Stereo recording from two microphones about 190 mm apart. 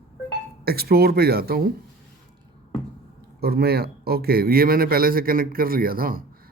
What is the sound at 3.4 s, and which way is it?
A man's voice, 55° right (ahead or behind).